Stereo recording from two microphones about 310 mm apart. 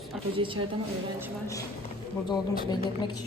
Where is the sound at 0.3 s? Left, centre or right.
Centre.